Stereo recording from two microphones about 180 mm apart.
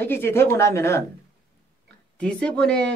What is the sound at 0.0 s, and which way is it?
Speech, 10° left (ahead or behind).